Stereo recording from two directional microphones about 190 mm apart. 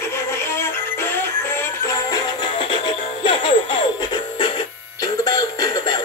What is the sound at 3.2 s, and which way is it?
Music, 25° left (ahead or behind).